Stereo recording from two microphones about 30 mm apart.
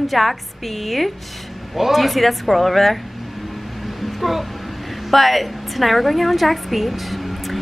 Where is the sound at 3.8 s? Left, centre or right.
Centre.